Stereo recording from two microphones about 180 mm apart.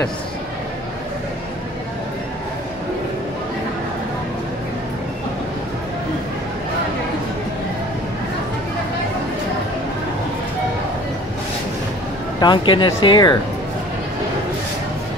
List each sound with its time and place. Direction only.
12.4 s speech: 25° left (ahead or behind)